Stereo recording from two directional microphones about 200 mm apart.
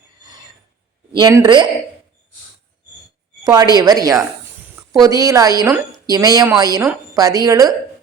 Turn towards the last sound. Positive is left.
turn(degrees=-20)  # may be behind; listen again after turning